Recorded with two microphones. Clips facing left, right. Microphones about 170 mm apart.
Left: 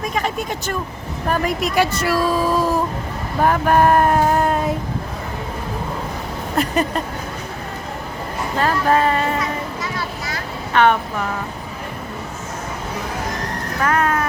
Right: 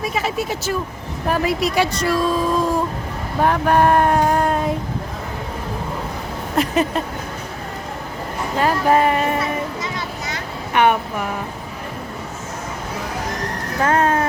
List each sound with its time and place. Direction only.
0.1 s speech: 5° right (ahead or behind)
6.6 s speech: centre (ahead or behind)
8.5 s speech: 15° right (ahead or behind)
9.4 s a sound: 20° right (ahead or behind)
13.8 s speech: 30° right (ahead or behind)